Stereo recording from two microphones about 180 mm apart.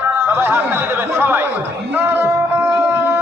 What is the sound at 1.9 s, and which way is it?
Music, 15° right (ahead or behind).